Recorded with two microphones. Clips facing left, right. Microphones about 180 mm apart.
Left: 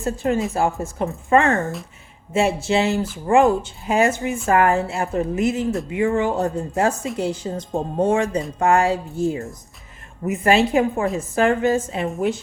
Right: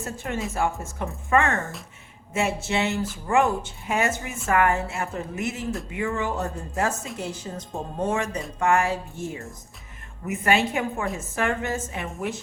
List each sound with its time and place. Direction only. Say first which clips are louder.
0.0 s a woman's voice: left 9 dB; 30° left (ahead or behind)